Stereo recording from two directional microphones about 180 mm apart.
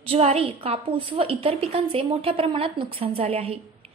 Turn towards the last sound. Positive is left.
turn(degrees=-35)  # may be behind; listen again after turning